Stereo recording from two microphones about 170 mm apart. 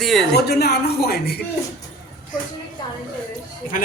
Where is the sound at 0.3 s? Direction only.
70° left (ahead or behind).